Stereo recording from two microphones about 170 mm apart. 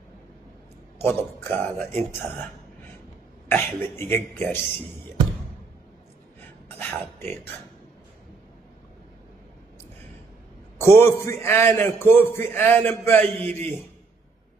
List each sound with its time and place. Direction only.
0.9 s a man's voice: 15° left (ahead or behind)
3.4 s a man's voice: 15° left (ahead or behind)
6.8 s speech: 10° left (ahead or behind)
11.0 s a man's voice: 15° left (ahead or behind)